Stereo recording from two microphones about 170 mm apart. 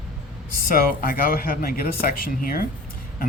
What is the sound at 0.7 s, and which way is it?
Speech, 55° left (ahead or behind).